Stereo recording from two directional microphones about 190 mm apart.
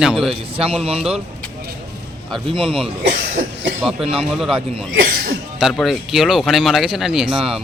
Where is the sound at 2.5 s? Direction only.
30° right (ahead or behind).